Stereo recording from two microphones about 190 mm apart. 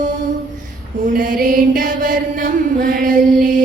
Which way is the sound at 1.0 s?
45° right (ahead or behind).